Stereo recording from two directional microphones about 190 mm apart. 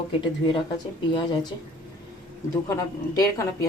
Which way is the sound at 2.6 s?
15° left (ahead or behind).